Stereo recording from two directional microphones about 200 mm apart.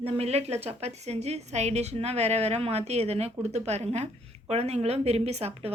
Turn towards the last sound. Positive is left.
turn(degrees=-30)  # may be behind; listen again after turning